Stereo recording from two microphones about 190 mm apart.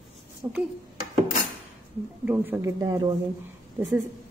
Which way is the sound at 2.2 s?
10° right (ahead or behind).